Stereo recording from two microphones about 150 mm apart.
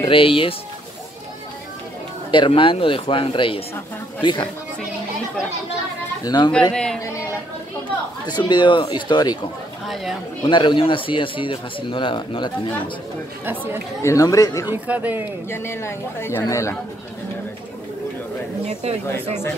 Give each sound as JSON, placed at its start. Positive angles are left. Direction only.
{"t": 0.1, "sound": "speech", "side_deg": 35}
{"t": 2.3, "sound": "speech", "side_deg": 35}
{"t": 6.2, "sound": "speech", "side_deg": 30}
{"t": 6.7, "sound": "speech", "side_deg": 5}
{"t": 8.3, "sound": "speech", "side_deg": 30}
{"t": 10.4, "sound": "speech", "side_deg": 30}
{"t": 14.0, "sound": "speech", "side_deg": 20}
{"t": 14.7, "sound": "speech", "side_deg": -10}
{"t": 15.5, "sound": "speech", "side_deg": 15}
{"t": 18.7, "sound": "speech", "side_deg": -50}